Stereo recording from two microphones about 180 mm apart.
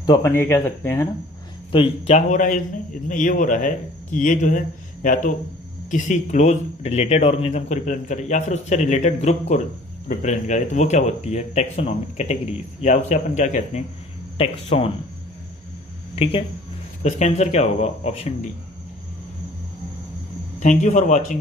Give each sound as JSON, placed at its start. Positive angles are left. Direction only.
{"t": 0.0, "sound": "speech", "side_deg": 15}
{"t": 1.7, "sound": "a man's voice", "side_deg": 35}
{"t": 16.2, "sound": "speech", "side_deg": 30}
{"t": 20.5, "sound": "speech", "side_deg": 40}